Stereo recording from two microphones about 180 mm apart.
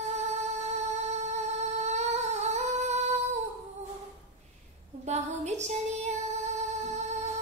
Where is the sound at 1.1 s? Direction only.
40° right (ahead or behind).